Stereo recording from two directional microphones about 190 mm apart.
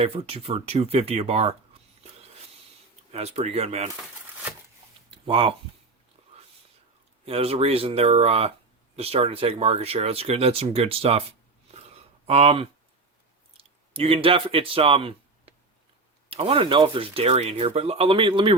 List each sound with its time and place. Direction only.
0.0 s speech: 30° right (ahead or behind)
2.0 s printer: 35° right (ahead or behind)
3.1 s speech: 35° right (ahead or behind)
5.1 s speech: 30° right (ahead or behind)
7.3 s speech: 30° right (ahead or behind)
11.7 s a sound: 35° right (ahead or behind)
13.6 s speech: 30° right (ahead or behind)